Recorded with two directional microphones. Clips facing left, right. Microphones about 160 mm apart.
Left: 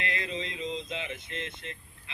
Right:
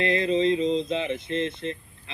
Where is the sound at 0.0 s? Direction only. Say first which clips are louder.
Right 13 dB; 30° right (ahead or behind).